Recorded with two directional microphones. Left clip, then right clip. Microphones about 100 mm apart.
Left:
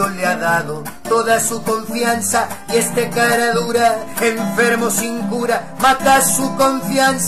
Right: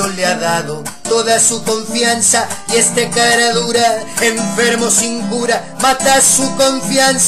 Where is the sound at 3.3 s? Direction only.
5° left (ahead or behind).